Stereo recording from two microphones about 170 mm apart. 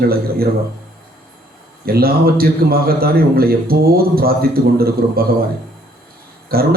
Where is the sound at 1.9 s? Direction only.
65° right (ahead or behind).